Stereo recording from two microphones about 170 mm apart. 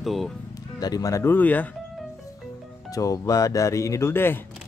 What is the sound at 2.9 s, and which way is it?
Speech, 20° left (ahead or behind).